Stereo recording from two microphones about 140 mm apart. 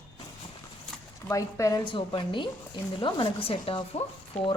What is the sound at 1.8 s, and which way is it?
Speech, 35° left (ahead or behind).